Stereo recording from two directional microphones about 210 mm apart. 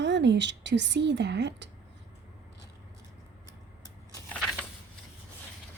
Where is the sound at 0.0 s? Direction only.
55° right (ahead or behind).